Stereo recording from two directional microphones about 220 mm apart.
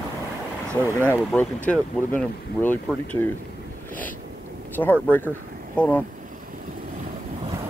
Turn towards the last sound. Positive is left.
turn(degrees=5)  # may be behind; listen again after turning